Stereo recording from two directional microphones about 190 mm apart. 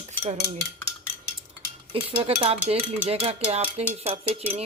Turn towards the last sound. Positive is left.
turn(degrees=-35)  # may be behind; listen again after turning